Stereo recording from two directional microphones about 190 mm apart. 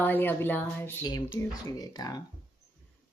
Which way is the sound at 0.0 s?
10° left (ahead or behind).